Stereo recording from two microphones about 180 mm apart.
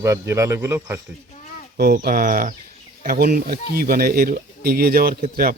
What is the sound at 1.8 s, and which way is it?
Speech, 60° right (ahead or behind).